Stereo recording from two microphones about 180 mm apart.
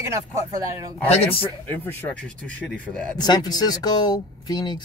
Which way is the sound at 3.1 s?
20° left (ahead or behind).